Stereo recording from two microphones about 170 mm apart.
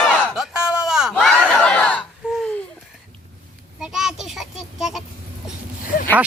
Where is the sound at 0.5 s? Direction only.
5° right (ahead or behind).